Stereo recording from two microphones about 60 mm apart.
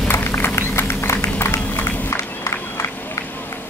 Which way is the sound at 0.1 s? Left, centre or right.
Left.